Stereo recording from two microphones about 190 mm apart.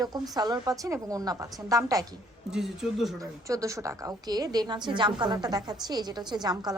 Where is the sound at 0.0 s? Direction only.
20° right (ahead or behind).